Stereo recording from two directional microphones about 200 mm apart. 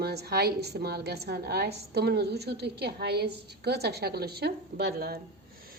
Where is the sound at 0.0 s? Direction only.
55° right (ahead or behind).